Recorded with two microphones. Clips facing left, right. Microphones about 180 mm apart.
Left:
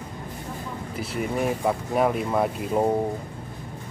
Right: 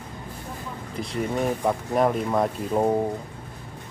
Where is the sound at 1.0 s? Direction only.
5° left (ahead or behind).